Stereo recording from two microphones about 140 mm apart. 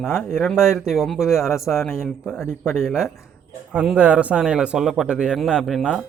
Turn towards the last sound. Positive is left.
turn(degrees=0)  # may be behind; listen again after turning